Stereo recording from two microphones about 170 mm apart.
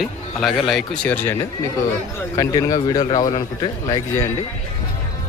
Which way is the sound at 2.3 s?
20° left (ahead or behind).